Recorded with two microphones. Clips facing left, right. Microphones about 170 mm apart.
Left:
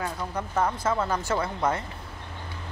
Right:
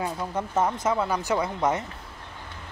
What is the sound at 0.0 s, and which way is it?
Speech, 20° right (ahead or behind).